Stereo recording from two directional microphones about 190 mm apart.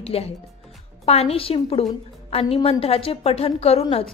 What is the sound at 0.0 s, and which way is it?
A woman's voice, 30° left (ahead or behind).